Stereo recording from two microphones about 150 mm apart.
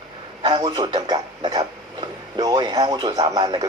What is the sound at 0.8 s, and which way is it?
Speech, 30° right (ahead or behind).